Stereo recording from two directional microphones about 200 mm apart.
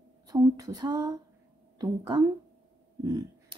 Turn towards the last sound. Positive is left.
turn(degrees=-20)  # may be behind; listen again after turning